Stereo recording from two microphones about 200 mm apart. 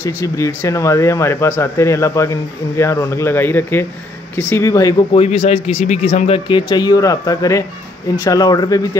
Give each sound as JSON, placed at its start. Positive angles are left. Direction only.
{"t": 0.0, "sound": "speech", "side_deg": 15}
{"t": 5.1, "sound": "speech", "side_deg": 35}